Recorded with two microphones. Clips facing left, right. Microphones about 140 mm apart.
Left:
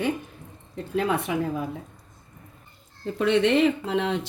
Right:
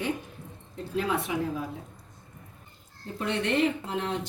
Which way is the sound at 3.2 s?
90° left.